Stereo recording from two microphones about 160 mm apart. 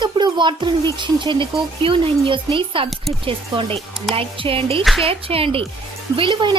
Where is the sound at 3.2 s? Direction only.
35° right (ahead or behind).